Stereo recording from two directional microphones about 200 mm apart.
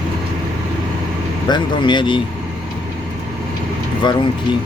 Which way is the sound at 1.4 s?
20° left (ahead or behind).